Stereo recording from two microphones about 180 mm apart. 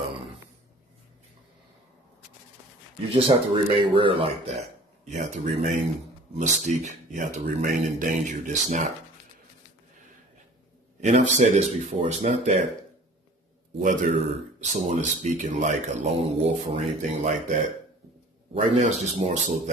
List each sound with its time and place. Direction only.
3.1 s speech: 30° right (ahead or behind)
5.0 s speech: 45° right (ahead or behind)
11.0 s speech: 40° right (ahead or behind)
13.7 s speech: 40° right (ahead or behind)